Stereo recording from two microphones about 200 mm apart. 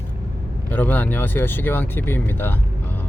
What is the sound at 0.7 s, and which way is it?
Speech, 10° left (ahead or behind).